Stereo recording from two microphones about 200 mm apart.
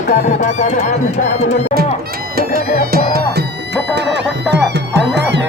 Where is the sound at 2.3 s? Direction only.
45° right (ahead or behind).